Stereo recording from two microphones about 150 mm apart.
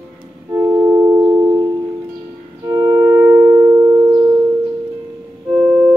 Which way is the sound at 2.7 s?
25° right (ahead or behind).